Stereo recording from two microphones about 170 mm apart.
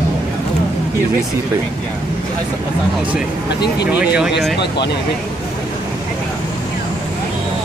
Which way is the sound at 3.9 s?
5° right (ahead or behind).